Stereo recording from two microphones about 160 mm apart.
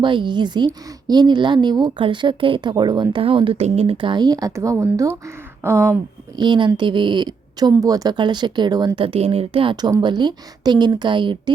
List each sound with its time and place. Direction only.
0.0 s speech: 30° right (ahead or behind)
6.4 s speech: 30° right (ahead or behind)